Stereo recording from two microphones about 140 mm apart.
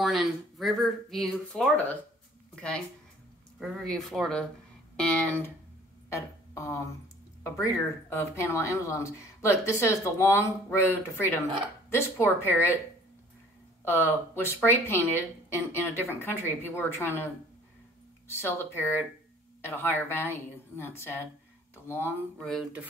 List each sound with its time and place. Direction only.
0.0 s speech: centre (ahead or behind)
6.1 s speech: 20° left (ahead or behind)
8.1 s speech: 15° left (ahead or behind)
13.8 s speech: 15° left (ahead or behind)
18.4 s speech: 15° left (ahead or behind)
22.4 s speech: centre (ahead or behind)